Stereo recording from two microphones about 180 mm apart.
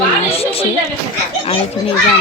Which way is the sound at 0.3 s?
35° left (ahead or behind).